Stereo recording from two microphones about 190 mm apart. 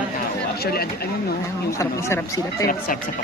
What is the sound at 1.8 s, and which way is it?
Speech, 15° left (ahead or behind).